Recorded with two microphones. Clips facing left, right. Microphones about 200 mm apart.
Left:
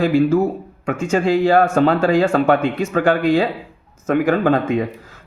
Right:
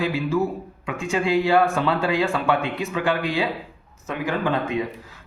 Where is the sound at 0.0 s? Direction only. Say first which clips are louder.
Left 8 dB; 45° left (ahead or behind).